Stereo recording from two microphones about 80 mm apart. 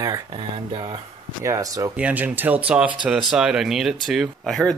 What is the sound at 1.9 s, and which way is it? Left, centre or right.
Speech, centre.